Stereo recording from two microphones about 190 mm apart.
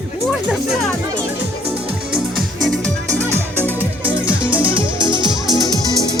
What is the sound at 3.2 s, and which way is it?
Music, 15° right (ahead or behind).